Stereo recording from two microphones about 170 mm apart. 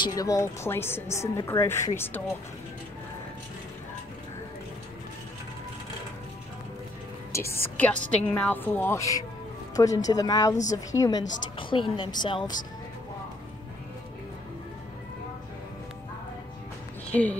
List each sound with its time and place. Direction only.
0.0 s a woman's voice: 20° left (ahead or behind)
7.3 s a woman's voice: 15° left (ahead or behind)
17.1 s a woman's voice: 10° left (ahead or behind)